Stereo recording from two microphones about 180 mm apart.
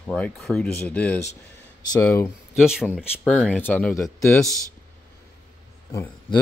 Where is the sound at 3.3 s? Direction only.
10° left (ahead or behind).